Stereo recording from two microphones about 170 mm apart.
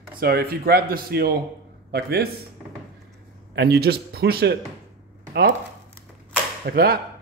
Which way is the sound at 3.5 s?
75° right (ahead or behind).